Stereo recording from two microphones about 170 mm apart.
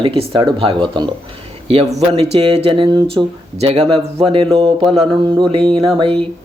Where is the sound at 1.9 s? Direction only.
40° right (ahead or behind).